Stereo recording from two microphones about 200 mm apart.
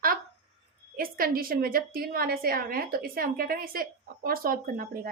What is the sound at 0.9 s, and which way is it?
A woman's voice, 45° right (ahead or behind).